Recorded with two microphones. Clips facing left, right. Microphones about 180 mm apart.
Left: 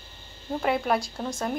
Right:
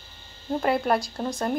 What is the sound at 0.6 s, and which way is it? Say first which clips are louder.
Speech: right 2 dB; centre (ahead or behind).